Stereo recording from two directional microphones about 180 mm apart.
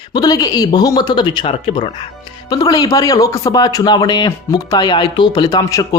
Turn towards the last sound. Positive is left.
turn(degrees=20)  # may be behind; listen again after turning